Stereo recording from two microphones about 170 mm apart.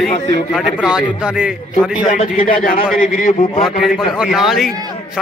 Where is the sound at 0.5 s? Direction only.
5° right (ahead or behind).